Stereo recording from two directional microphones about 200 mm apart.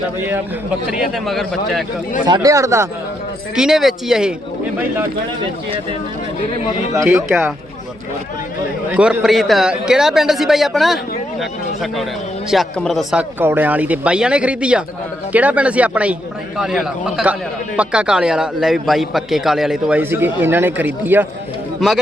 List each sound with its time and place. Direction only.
0.9 s a man's voice: centre (ahead or behind)
2.2 s speech: 20° right (ahead or behind)
3.5 s a man's voice: centre (ahead or behind)
6.9 s speech: 15° right (ahead or behind)
8.9 s a man's voice: 5° right (ahead or behind)